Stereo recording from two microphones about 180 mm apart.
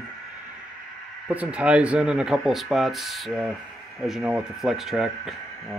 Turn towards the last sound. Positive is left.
turn(degrees=0)  # may be behind; listen again after turning